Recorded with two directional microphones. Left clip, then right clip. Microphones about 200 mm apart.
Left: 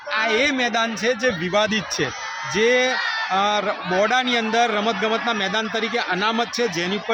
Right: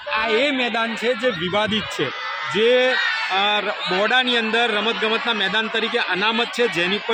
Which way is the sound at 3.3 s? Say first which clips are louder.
Left 2 dB; 20° left (ahead or behind).